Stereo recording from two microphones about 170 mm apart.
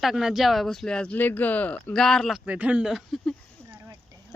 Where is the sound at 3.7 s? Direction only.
15° right (ahead or behind).